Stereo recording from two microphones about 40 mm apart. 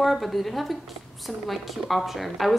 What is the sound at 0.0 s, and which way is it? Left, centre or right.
A woman's voice, centre.